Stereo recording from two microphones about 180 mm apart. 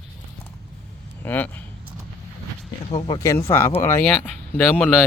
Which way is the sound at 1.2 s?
10° left (ahead or behind).